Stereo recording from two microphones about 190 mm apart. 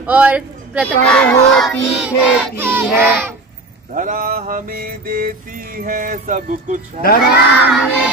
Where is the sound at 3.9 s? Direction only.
45° right (ahead or behind).